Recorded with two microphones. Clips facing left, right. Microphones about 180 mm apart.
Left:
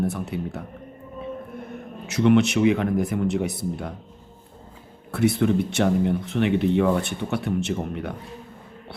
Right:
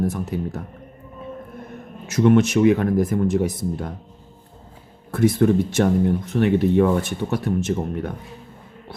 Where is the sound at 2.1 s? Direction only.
45° right (ahead or behind).